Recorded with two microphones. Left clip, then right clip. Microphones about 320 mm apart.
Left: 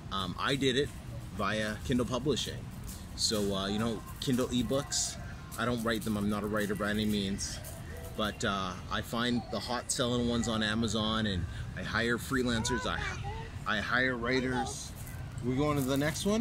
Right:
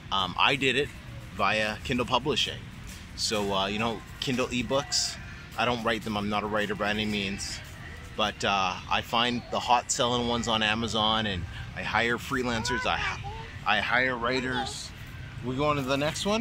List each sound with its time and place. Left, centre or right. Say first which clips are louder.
0.1 s speech: right 8 dB; centre
9.5 s speech: right 11 dB; right
9.8 s speech: right 6 dB; centre